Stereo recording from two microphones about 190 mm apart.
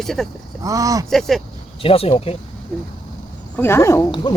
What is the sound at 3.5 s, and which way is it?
Speech, 10° left (ahead or behind).